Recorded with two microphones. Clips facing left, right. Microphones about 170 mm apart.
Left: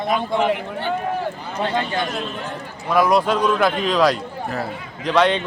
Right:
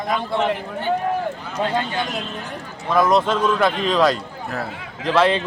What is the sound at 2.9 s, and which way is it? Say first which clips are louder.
A man's voice: even; centre (ahead or behind).